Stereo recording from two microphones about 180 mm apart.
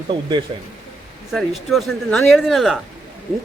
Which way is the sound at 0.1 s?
25° right (ahead or behind).